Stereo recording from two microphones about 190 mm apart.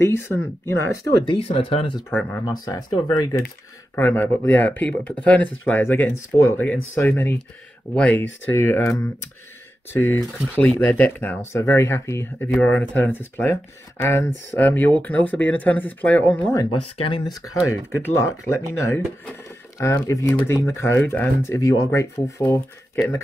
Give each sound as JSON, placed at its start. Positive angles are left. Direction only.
{"t": 0.0, "sound": "speech", "side_deg": 15}
{"t": 1.2, "sound": "speech", "side_deg": 25}
{"t": 2.0, "sound": "speech", "side_deg": 10}
{"t": 5.4, "sound": "speech", "side_deg": 80}
{"t": 5.7, "sound": "speech", "side_deg": 10}
{"t": 16.9, "sound": "speech", "side_deg": 30}
{"t": 17.3, "sound": "speech", "side_deg": 15}